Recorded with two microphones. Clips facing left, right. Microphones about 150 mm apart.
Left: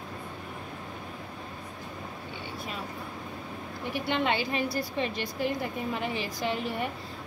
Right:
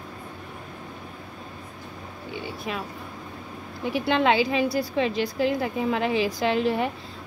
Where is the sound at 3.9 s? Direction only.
90° right.